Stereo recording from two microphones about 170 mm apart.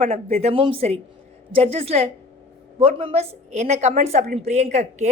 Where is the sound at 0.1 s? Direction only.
35° right (ahead or behind).